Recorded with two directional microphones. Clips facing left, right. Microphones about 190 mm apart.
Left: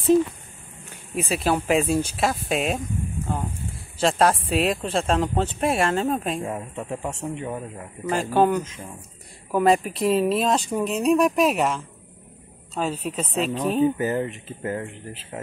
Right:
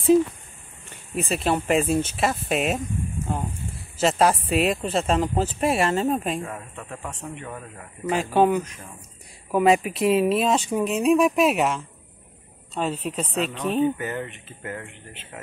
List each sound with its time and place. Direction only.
0.8 s speech: centre (ahead or behind)
4.0 s speech: 5° right (ahead or behind)
6.4 s speech: 25° left (ahead or behind)
8.1 s speech: centre (ahead or behind)
13.9 s speech: 30° left (ahead or behind)